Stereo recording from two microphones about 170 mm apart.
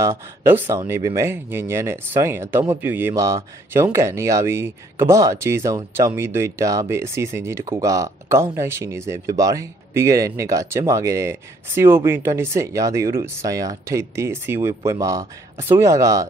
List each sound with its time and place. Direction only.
0.0 s speech: 15° right (ahead or behind)